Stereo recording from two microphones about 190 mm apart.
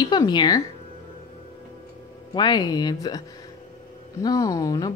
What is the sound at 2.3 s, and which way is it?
Speech, 20° left (ahead or behind).